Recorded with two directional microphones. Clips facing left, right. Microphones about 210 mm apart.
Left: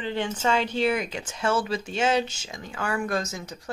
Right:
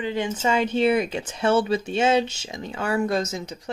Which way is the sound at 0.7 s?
25° right (ahead or behind).